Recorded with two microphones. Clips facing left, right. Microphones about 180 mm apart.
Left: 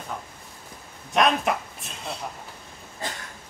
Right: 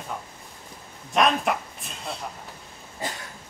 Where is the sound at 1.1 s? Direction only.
Centre (ahead or behind).